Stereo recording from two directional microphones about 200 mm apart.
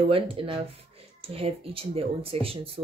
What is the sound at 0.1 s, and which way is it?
Speech, 25° right (ahead or behind).